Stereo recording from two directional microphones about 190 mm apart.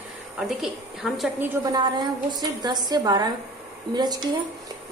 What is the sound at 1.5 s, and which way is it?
A woman's voice, 20° right (ahead or behind).